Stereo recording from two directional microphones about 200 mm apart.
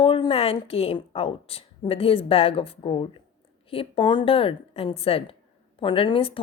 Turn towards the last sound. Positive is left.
turn(degrees=25)  # may be behind; listen again after turning